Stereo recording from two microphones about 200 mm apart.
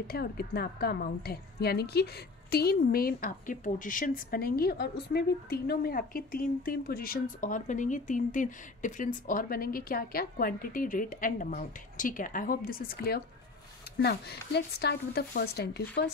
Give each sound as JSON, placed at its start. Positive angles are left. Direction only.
{"t": 0.0, "sound": "a woman's voice", "side_deg": 50}